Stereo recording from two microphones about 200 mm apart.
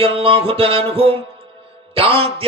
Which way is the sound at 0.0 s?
25° right (ahead or behind).